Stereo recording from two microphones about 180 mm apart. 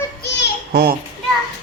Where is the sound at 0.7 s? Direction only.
60° right (ahead or behind).